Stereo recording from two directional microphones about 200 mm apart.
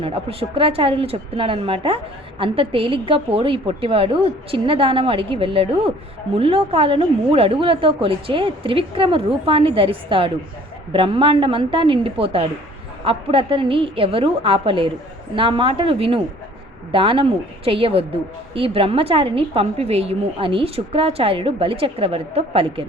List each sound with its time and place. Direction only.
0.0 s a woman's voice: 30° right (ahead or behind)